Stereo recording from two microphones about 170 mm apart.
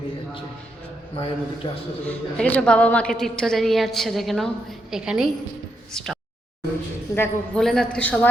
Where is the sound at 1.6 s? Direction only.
30° left (ahead or behind).